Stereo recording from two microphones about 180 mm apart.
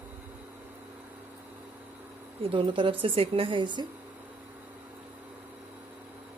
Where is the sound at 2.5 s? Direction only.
30° right (ahead or behind).